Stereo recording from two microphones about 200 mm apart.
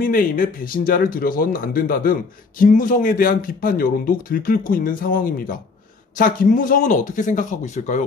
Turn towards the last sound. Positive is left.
turn(degrees=40)  # may be behind; listen again after turning